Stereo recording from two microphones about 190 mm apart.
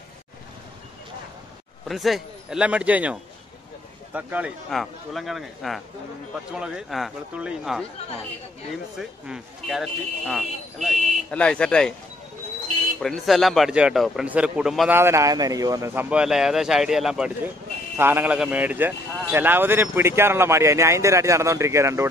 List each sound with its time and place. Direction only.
1.9 s speech: centre (ahead or behind)
8.9 s speech: centre (ahead or behind)
11.0 s a sound: 40° right (ahead or behind)
11.2 s speech: 5° left (ahead or behind)
13.0 s speech: centre (ahead or behind)
15.0 s speech: 15° right (ahead or behind)